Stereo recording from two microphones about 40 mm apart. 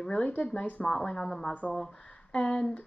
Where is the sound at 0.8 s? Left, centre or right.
Centre.